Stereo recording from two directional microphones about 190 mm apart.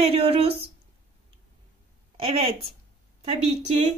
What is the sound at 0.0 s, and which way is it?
Speech, 30° right (ahead or behind).